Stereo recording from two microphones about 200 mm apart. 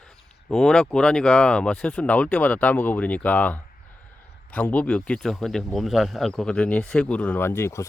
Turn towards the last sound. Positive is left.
turn(degrees=15)  # may be behind; listen again after turning